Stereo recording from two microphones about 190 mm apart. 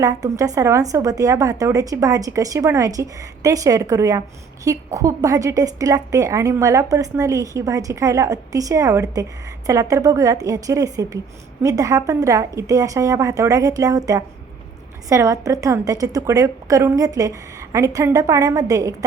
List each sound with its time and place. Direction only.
0.0 s a woman's voice: 20° right (ahead or behind)